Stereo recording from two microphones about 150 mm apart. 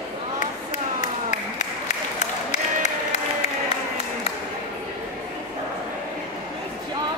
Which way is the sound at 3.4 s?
45° left (ahead or behind).